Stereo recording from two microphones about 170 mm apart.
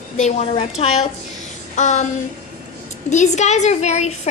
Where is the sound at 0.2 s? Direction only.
40° left (ahead or behind).